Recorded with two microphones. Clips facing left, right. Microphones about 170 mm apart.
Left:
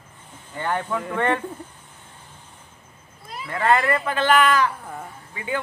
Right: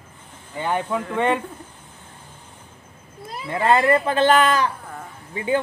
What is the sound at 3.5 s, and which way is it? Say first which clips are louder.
Speech: right 3 dB; 25° right (ahead or behind).